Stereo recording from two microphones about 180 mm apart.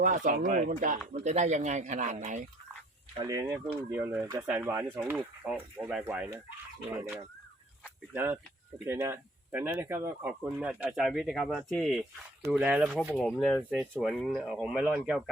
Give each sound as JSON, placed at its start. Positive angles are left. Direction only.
{"t": 0.3, "sound": "speech", "side_deg": -45}
{"t": 3.2, "sound": "speech", "side_deg": -20}